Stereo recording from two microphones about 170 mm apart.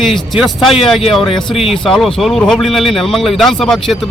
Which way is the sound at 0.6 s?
30° left (ahead or behind).